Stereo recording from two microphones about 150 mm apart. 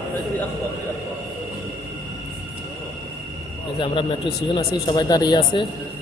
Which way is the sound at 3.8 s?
35° left (ahead or behind).